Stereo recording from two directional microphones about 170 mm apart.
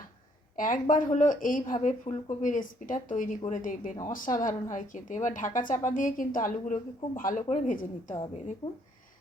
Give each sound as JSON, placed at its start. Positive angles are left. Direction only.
{"t": 0.5, "sound": "a woman's voice", "side_deg": 50}